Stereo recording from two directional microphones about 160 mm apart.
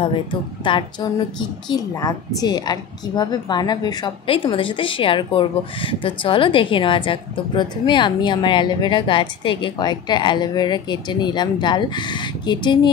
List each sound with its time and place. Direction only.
0.0 s a woman's voice: 30° left (ahead or behind)